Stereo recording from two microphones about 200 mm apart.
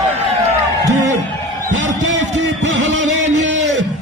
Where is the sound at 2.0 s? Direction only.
70° right (ahead or behind).